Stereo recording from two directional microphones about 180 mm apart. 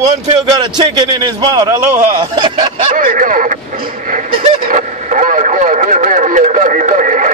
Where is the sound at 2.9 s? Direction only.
50° right (ahead or behind).